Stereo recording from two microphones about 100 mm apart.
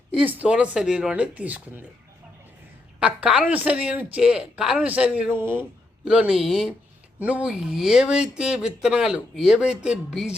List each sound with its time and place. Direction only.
0.2 s speech: 15° right (ahead or behind)
3.0 s speech: 10° right (ahead or behind)
5.3 s speech: 20° right (ahead or behind)
6.1 s speech: 10° right (ahead or behind)
7.2 s speech: 15° right (ahead or behind)